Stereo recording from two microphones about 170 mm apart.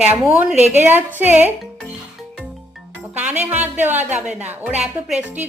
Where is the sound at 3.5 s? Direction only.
10° right (ahead or behind).